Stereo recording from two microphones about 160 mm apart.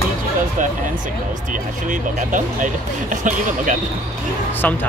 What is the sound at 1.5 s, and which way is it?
Speech, 55° right (ahead or behind).